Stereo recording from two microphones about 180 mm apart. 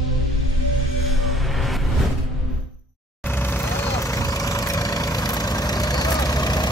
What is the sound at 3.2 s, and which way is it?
Vehicle, 10° left (ahead or behind).